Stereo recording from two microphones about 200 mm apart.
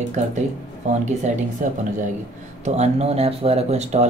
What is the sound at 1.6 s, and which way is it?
Speech, 40° right (ahead or behind).